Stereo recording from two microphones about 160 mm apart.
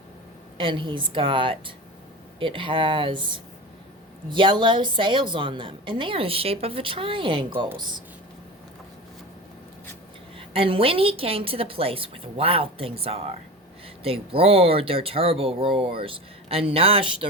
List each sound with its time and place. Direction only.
0.5 s a woman's voice: 30° right (ahead or behind)
10.3 s a woman's voice: 35° right (ahead or behind)